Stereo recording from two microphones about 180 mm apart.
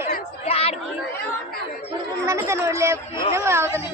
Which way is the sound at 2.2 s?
15° right (ahead or behind).